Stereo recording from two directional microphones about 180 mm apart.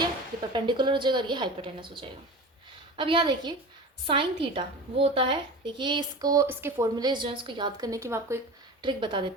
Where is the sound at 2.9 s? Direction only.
30° right (ahead or behind).